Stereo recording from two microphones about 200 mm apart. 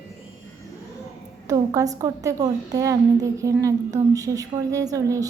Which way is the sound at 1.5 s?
15° right (ahead or behind).